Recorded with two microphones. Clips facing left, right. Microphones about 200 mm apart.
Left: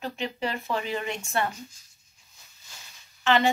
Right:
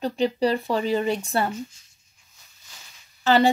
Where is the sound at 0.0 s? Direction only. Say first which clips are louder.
Right 9 dB; 35° right (ahead or behind).